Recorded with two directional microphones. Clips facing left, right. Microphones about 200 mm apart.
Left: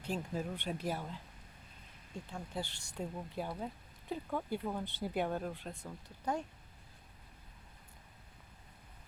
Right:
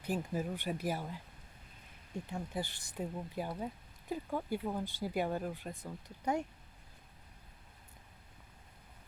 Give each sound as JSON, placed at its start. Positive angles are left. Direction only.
{"t": 0.0, "sound": "speech", "side_deg": -5}
{"t": 2.3, "sound": "speech", "side_deg": -10}